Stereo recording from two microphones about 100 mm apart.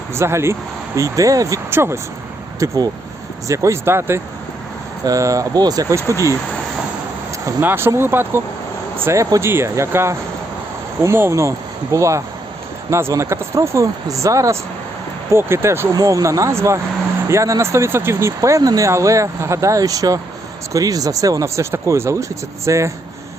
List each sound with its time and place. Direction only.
0.1 s speech: 25° right (ahead or behind)
2.6 s speech: 35° right (ahead or behind)
5.0 s speech: 35° right (ahead or behind)
7.6 s speech: 20° right (ahead or behind)
15.9 s speech: 35° right (ahead or behind)